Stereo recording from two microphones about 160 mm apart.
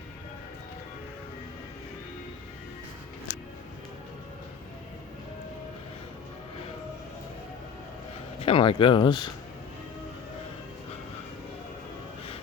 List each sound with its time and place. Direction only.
8.4 s speech: 35° left (ahead or behind)